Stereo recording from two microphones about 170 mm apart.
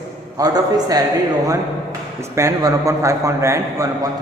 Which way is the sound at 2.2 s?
15° right (ahead or behind).